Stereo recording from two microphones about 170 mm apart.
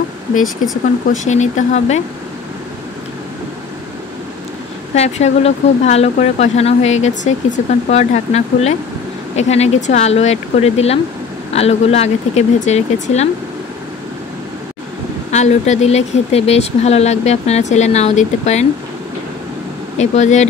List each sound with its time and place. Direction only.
1.2 s speech: 45° left (ahead or behind)
4.9 s speech: 40° left (ahead or behind)
15.3 s speech: 40° left (ahead or behind)
20.0 s speech: 40° left (ahead or behind)